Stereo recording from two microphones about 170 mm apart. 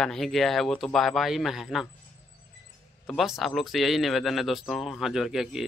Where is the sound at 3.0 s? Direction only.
Centre (ahead or behind).